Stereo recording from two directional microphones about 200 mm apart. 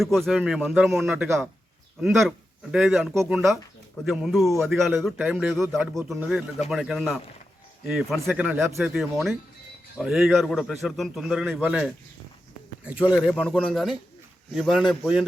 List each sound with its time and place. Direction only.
0.0 s a man's voice: centre (ahead or behind)
13.1 s a man's voice: 5° left (ahead or behind)